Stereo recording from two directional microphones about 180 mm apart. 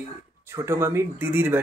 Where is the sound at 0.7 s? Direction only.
15° right (ahead or behind).